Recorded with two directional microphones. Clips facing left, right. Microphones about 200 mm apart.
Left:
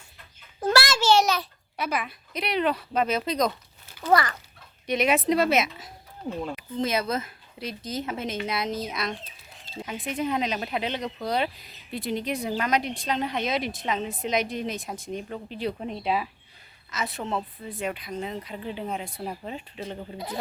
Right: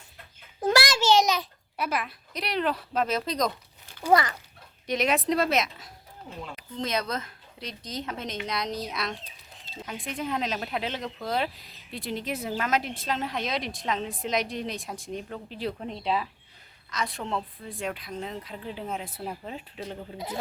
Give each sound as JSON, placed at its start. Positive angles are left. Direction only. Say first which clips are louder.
{"t": 0.7, "sound": "a sound", "louder": "left 1 dB", "side_deg": -15}
{"t": 1.7, "sound": "speech", "louder": "left 1 dB", "side_deg": 0}
{"t": 4.0, "sound": "speech", "louder": "even", "side_deg": -20}
{"t": 4.9, "sound": "speech", "louder": "left 3 dB", "side_deg": 0}